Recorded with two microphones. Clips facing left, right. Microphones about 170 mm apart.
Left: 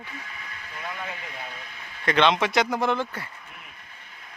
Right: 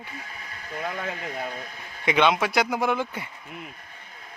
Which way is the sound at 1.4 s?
40° right (ahead or behind).